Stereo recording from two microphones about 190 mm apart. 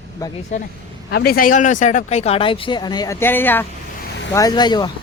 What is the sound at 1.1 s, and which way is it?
Speech, 55° left (ahead or behind).